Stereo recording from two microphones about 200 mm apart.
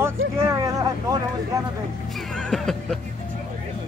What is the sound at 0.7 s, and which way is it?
Vehicle, 15° right (ahead or behind).